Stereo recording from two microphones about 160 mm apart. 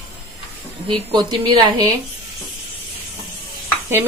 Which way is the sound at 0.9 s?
25° right (ahead or behind).